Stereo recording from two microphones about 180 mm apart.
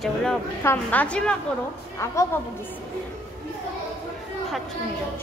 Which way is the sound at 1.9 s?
15° left (ahead or behind).